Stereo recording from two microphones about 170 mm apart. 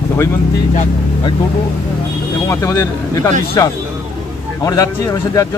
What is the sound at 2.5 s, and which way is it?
Speech, 15° left (ahead or behind).